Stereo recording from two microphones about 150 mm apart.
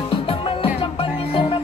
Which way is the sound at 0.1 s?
35° left (ahead or behind).